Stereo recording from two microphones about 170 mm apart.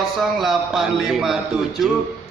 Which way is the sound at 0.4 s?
Centre (ahead or behind).